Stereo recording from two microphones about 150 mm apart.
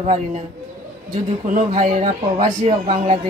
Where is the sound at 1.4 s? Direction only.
55° right (ahead or behind).